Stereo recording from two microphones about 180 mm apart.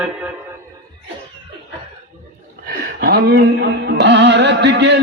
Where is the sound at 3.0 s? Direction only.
60° right (ahead or behind).